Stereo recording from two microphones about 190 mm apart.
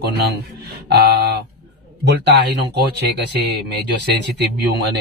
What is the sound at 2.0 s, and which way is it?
Speech, 60° right (ahead or behind).